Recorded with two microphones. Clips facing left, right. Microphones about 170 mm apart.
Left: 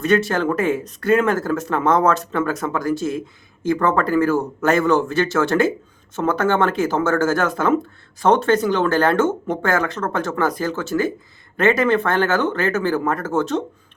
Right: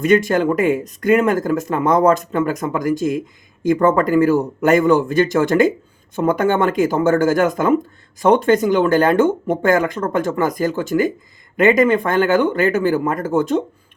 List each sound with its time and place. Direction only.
0.0 s speech: 15° right (ahead or behind)